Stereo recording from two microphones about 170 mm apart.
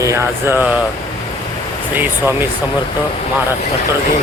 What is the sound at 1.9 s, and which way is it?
Speech, 10° right (ahead or behind).